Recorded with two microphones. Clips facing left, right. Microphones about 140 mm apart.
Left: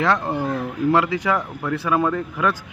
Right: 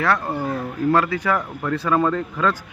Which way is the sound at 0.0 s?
20° left (ahead or behind).